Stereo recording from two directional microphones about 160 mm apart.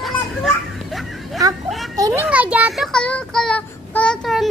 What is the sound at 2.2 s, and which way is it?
Child singing, 10° right (ahead or behind).